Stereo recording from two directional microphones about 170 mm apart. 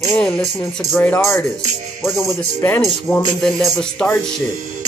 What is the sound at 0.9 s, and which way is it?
Music, 15° left (ahead or behind).